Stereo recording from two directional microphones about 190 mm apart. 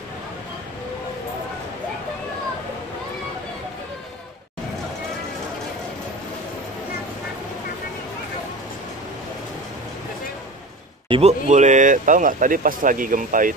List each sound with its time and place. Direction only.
11.1 s speech: 30° right (ahead or behind)